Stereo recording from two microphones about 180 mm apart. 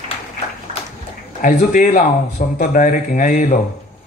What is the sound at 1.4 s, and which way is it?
A man's voice, 45° left (ahead or behind).